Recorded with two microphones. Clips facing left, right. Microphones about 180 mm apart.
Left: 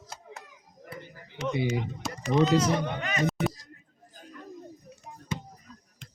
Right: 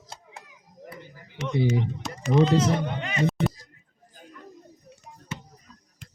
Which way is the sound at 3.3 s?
Centre (ahead or behind).